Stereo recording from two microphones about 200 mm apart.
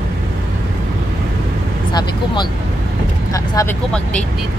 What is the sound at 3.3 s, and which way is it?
Speech, 15° left (ahead or behind).